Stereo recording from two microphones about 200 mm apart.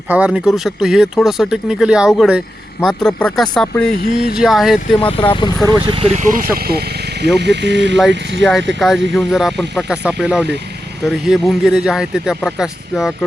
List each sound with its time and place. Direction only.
0.1 s speech: 5° right (ahead or behind)
4.9 s speech: 25° left (ahead or behind)
5.8 s speech: 25° right (ahead or behind); by 8.4 s 60° right (ahead or behind)
8.8 s speech: centre (ahead or behind)